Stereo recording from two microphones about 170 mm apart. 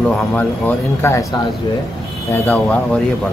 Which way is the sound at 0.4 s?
15° left (ahead or behind).